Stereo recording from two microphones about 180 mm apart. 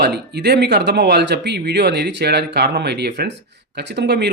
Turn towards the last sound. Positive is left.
turn(degrees=-70)  # may be behind; listen again after turning